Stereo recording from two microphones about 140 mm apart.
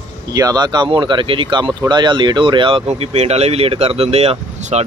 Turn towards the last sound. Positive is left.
turn(degrees=-55)  # may be behind; listen again after turning